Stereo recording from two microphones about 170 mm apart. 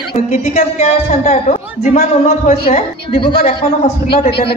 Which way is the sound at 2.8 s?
30° left (ahead or behind).